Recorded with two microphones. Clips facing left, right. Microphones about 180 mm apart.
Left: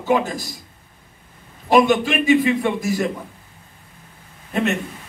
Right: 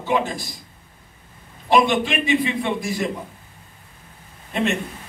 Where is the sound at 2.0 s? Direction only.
40° left (ahead or behind).